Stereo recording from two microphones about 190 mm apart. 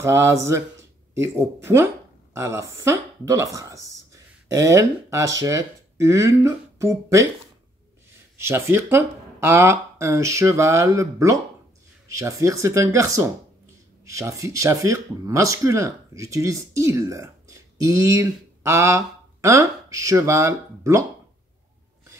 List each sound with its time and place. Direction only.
0.0 s speech: 15° right (ahead or behind)
8.4 s speech: 15° right (ahead or behind)